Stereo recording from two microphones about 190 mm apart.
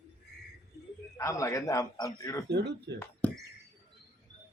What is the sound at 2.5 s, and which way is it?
Speech, 60° right (ahead or behind).